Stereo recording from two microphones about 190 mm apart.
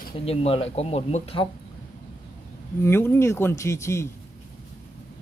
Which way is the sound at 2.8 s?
10° left (ahead or behind).